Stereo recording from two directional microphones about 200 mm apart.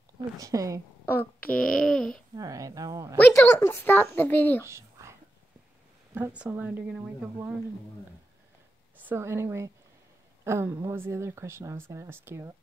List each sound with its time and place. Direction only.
0.4 s speech: 15° right (ahead or behind)
1.0 s speech: 10° left (ahead or behind)
2.3 s speech: 15° right (ahead or behind)
3.2 s speech: 10° left (ahead or behind)
4.6 s whispering: 15° right (ahead or behind)
6.1 s speech: 10° right (ahead or behind)
9.0 s speech: 10° right (ahead or behind)